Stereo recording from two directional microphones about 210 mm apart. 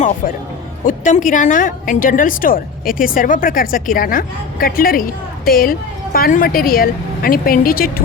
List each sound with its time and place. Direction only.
0.9 s a woman's voice: 40° left (ahead or behind)